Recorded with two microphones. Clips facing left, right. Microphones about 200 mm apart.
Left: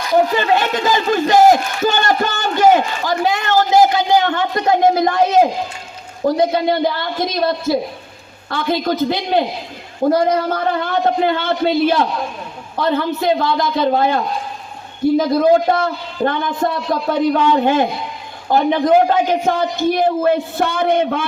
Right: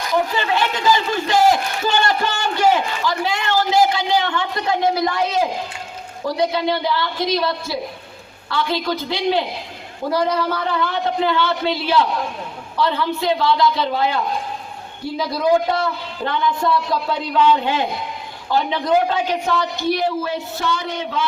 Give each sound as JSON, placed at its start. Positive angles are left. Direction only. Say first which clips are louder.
{"t": 0.3, "sound": "speech", "louder": "left 5 dB", "side_deg": 50}